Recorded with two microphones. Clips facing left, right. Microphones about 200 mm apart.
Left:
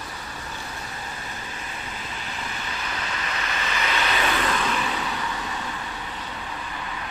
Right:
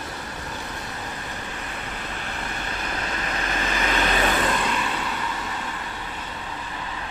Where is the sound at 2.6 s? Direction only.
45° right (ahead or behind).